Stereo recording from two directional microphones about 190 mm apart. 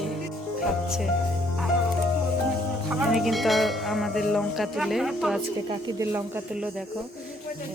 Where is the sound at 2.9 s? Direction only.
5° right (ahead or behind).